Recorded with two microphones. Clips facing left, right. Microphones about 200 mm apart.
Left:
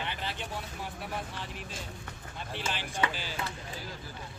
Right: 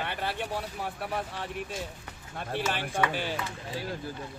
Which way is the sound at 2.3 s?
60° right (ahead or behind).